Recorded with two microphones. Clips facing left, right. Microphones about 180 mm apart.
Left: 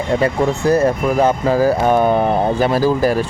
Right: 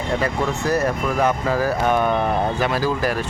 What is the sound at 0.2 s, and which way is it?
Speech, 30° left (ahead or behind).